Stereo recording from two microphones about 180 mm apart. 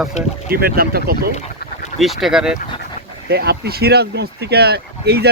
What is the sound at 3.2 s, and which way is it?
Speech, 65° right (ahead or behind).